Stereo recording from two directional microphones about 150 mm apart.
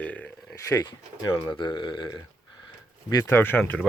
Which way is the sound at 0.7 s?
25° left (ahead or behind).